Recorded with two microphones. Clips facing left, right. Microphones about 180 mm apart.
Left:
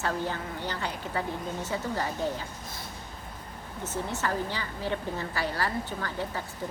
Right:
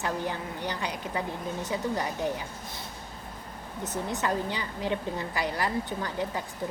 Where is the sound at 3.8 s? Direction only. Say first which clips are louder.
Right 1 dB; 15° right (ahead or behind).